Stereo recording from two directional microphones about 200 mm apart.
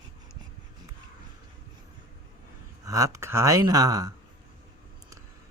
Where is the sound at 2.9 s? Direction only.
15° right (ahead or behind).